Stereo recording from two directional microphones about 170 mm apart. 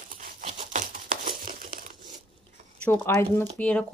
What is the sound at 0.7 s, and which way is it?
Crumpling, 55° right (ahead or behind).